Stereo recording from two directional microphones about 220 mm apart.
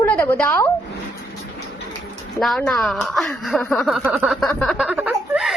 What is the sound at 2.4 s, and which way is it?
A woman's voice, centre (ahead or behind).